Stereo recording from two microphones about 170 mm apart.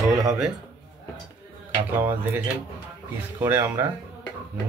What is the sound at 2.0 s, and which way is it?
Speech, 10° right (ahead or behind).